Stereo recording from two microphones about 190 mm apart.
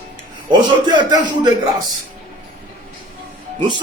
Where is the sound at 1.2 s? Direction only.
25° right (ahead or behind).